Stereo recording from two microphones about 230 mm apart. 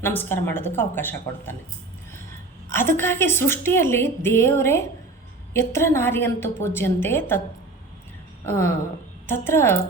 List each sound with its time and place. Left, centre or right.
0.0 s a woman's voice: centre
2.6 s a woman's voice: centre
8.4 s a woman's voice: centre